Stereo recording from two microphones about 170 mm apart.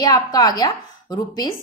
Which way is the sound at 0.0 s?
20° left (ahead or behind).